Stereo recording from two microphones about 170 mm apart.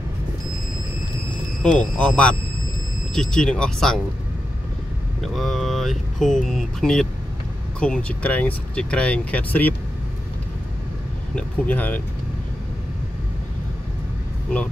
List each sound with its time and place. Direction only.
1.6 s speech: 5° left (ahead or behind)
5.2 s speech: centre (ahead or behind)
11.3 s speech: 10° left (ahead or behind)